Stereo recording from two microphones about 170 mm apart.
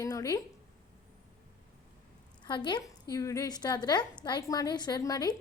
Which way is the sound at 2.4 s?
25° left (ahead or behind).